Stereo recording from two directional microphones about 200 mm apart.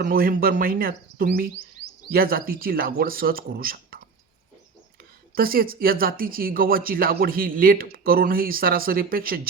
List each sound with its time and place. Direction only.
0.0 s speech: 45° right (ahead or behind)
5.3 s speech: 45° right (ahead or behind)